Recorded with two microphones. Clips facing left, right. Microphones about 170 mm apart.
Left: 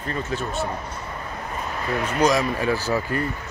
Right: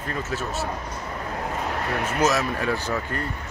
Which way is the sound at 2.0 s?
5° right (ahead or behind).